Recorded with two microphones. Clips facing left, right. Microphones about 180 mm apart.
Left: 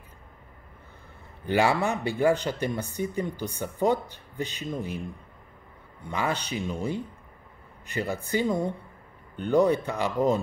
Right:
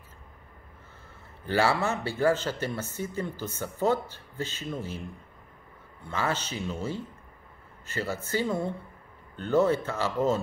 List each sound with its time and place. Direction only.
1.4 s speech: 15° left (ahead or behind)
6.0 s speech: 15° left (ahead or behind)